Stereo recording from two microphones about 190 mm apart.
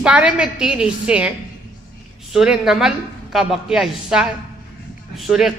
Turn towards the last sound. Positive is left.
turn(degrees=0)  # may be behind; listen again after turning